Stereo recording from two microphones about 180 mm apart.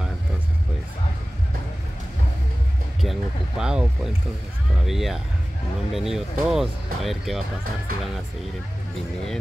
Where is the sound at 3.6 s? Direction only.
5° right (ahead or behind).